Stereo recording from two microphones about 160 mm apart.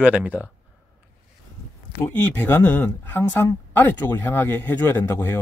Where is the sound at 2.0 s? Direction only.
10° left (ahead or behind).